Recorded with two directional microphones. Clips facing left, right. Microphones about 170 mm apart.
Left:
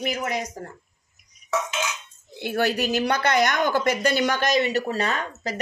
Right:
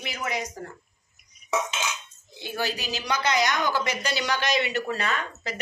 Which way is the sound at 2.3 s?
60° left (ahead or behind).